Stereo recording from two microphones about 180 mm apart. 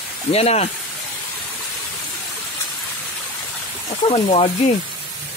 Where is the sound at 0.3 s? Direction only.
35° left (ahead or behind).